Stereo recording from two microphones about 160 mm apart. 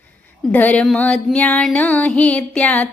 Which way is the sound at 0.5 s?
10° left (ahead or behind).